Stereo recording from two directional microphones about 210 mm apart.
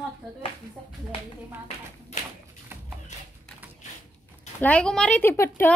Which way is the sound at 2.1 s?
35° left (ahead or behind).